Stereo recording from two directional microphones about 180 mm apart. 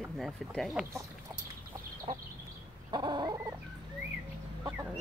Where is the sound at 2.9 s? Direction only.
25° right (ahead or behind).